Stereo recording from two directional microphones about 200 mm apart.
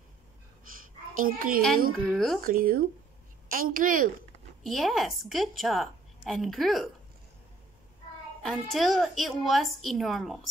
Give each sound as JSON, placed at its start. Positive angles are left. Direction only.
{"t": 1.1, "sound": "a woman's voice", "side_deg": -45}
{"t": 2.0, "sound": "a woman's voice", "side_deg": 0}
{"t": 2.4, "sound": "a woman's voice", "side_deg": -45}
{"t": 4.6, "sound": "a woman's voice", "side_deg": 0}
{"t": 8.4, "sound": "a woman's voice", "side_deg": 0}